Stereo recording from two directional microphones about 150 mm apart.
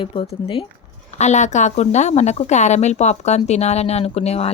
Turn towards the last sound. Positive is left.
turn(degrees=45)  # may be behind; listen again after turning